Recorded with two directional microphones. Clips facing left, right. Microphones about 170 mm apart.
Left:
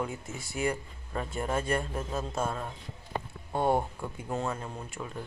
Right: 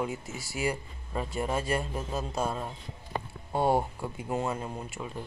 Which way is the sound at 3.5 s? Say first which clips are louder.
Right 1 dB; 10° right (ahead or behind).